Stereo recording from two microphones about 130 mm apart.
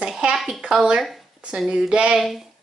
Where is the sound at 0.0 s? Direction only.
5° right (ahead or behind).